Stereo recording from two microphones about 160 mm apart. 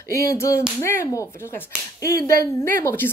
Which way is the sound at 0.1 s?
20° left (ahead or behind).